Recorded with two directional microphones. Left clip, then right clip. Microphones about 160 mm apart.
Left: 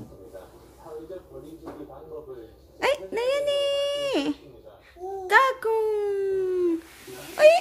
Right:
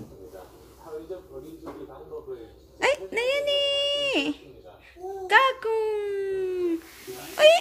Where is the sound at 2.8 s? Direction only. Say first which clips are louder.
Even; 10° left (ahead or behind).